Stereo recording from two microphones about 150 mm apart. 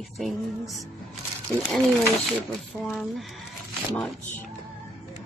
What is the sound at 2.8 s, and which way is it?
Speech, 5° left (ahead or behind).